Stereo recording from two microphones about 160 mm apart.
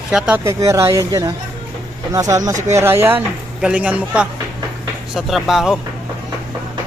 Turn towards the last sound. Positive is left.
turn(degrees=0)  # may be behind; listen again after turning